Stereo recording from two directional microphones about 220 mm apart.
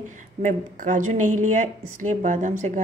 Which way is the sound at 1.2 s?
80° right.